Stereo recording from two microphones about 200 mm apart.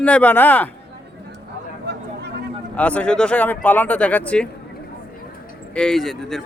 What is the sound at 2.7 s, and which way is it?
Speech, 5° left (ahead or behind).